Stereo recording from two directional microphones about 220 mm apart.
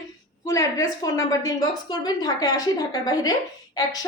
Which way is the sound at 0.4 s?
15° left (ahead or behind).